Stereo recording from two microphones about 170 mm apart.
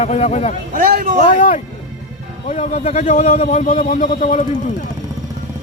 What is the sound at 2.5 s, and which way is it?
Speech, 40° left (ahead or behind).